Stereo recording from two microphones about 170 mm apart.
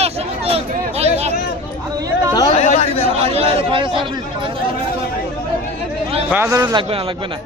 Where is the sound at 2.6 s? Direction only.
40° left (ahead or behind).